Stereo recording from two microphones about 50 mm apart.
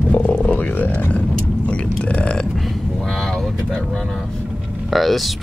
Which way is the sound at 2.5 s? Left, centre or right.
Centre.